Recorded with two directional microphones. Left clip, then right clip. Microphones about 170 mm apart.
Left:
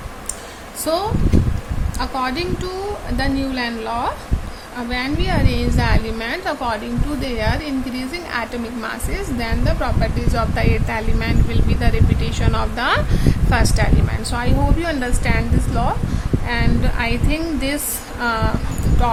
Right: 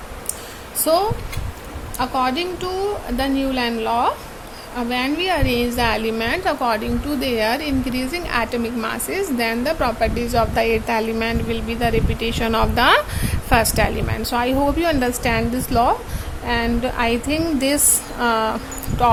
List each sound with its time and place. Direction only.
2.0 s a woman's voice: 25° right (ahead or behind)